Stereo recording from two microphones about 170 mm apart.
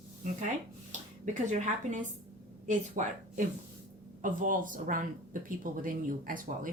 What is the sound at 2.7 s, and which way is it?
Speech, 45° right (ahead or behind).